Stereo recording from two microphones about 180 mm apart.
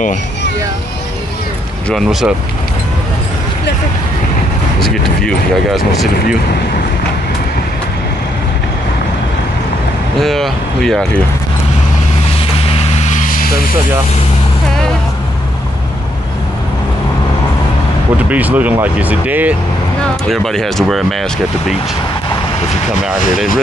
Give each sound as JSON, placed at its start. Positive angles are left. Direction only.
{"t": 1.9, "sound": "speech", "side_deg": 0}
{"t": 4.7, "sound": "speech", "side_deg": 5}
{"t": 10.1, "sound": "speech", "side_deg": 0}
{"t": 12.6, "sound": "vehicle", "side_deg": 35}
{"t": 18.3, "sound": "speech", "side_deg": -10}
{"t": 20.0, "sound": "speech", "side_deg": 0}